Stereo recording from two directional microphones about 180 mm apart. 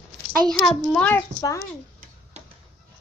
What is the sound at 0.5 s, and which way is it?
A child's voice, 5° left (ahead or behind).